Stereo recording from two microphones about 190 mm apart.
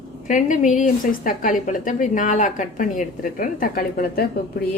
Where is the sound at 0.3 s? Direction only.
40° left (ahead or behind).